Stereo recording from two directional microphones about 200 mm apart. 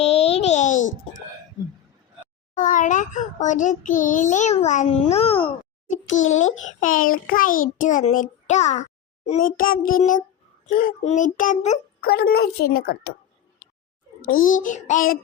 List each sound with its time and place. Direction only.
0.0 s a sound: 30° left (ahead or behind)
2.6 s a child's voice: 40° left (ahead or behind)
6.2 s a child's voice: 80° left
6.7 s a woman's voice: 40° left (ahead or behind)
11.9 s a woman's voice: 50° left (ahead or behind)
14.3 s a child's voice: 45° left (ahead or behind)